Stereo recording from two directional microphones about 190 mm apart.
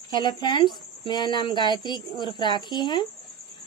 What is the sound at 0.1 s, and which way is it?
A woman's voice, 20° left (ahead or behind).